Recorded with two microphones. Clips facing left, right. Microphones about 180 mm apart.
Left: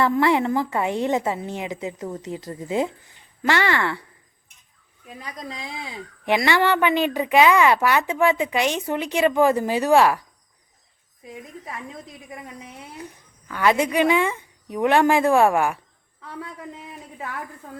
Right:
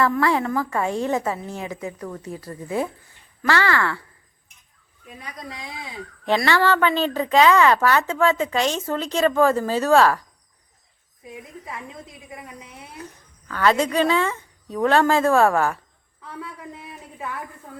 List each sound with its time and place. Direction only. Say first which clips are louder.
0.0 s a woman's voice: left 1 dB; 20° left (ahead or behind)
5.2 s a woman's voice: left 2 dB; 25° left (ahead or behind)
6.2 s a woman's voice: even; 15° left (ahead or behind)
13.5 s a woman's voice: even; 15° left (ahead or behind)
16.4 s a sound: left 1 dB; 25° left (ahead or behind)